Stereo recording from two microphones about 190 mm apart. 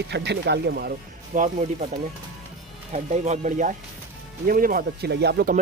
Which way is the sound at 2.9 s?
35° right (ahead or behind).